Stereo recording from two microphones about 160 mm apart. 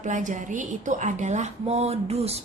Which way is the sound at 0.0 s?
50° right (ahead or behind).